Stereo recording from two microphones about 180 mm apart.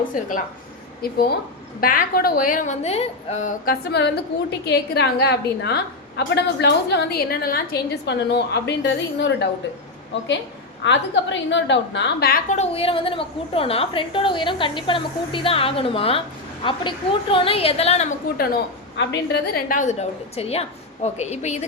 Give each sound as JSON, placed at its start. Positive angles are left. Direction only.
{"t": 0.1, "sound": "a woman's voice", "side_deg": 50}
{"t": 1.0, "sound": "a woman's voice", "side_deg": 60}
{"t": 3.7, "sound": "a woman's voice", "side_deg": 70}
{"t": 10.8, "sound": "a woman's voice", "side_deg": 90}
{"t": 12.5, "sound": "a woman's voice", "side_deg": 35}
{"t": 18.9, "sound": "a woman's voice", "side_deg": 70}